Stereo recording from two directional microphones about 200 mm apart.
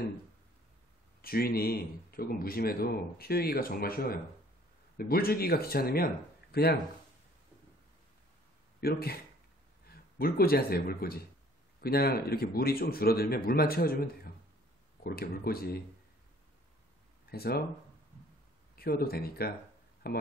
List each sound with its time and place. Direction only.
1.2 s speech: 50° left (ahead or behind)
8.8 s a man's voice: 50° left (ahead or behind)
15.0 s speech: 50° left (ahead or behind)
17.3 s speech: 50° left (ahead or behind)
18.8 s speech: 50° left (ahead or behind)